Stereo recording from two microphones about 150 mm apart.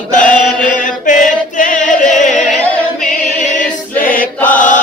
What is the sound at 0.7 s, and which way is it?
Chant, 60° left (ahead or behind).